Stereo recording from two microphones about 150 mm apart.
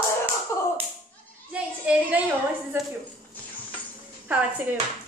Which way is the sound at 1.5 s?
10° right (ahead or behind).